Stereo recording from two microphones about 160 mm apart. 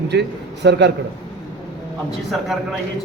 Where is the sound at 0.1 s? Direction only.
90° right.